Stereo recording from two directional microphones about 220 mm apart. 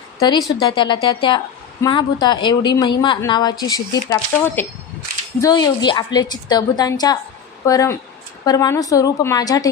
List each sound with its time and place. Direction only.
0.2 s a woman's voice: 20° left (ahead or behind)